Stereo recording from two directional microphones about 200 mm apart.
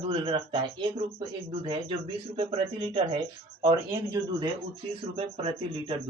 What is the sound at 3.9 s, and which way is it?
Speech, 15° right (ahead or behind).